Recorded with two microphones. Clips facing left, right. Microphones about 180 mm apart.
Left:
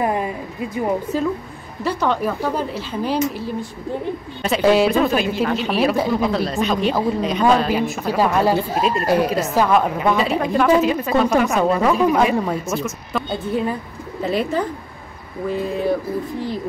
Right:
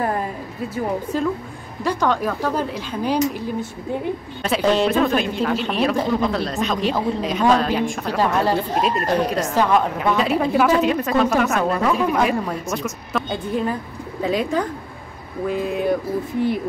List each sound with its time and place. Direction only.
0.0 s a woman's voice: 10° left (ahead or behind)
4.4 s speech: 5° left (ahead or behind)